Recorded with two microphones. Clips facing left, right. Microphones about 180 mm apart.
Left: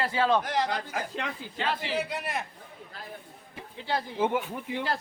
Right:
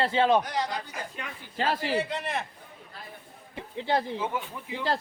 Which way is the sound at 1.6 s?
40° right (ahead or behind).